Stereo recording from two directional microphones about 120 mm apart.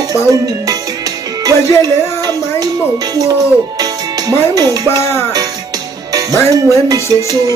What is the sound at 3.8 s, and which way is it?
Music, 30° right (ahead or behind).